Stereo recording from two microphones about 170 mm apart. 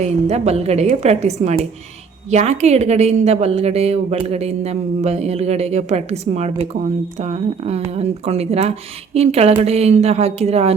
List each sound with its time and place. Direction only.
0.0 s a woman's voice: 40° right (ahead or behind)